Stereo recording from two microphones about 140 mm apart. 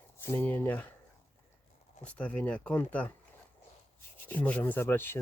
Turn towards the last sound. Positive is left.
turn(degrees=15)  # may be behind; listen again after turning